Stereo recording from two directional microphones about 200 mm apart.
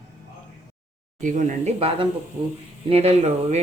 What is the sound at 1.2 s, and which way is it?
Speech, 35° right (ahead or behind).